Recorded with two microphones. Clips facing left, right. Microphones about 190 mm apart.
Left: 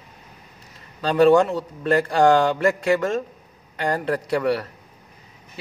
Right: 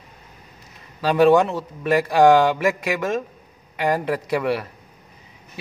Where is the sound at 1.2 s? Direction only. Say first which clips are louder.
Even; 15° right (ahead or behind).